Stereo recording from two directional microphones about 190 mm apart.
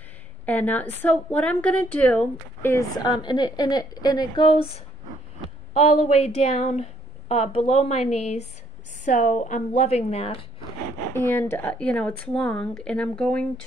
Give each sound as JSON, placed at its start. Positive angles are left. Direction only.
{"t": 0.5, "sound": "a woman's voice", "side_deg": 10}
{"t": 11.1, "sound": "speech", "side_deg": 10}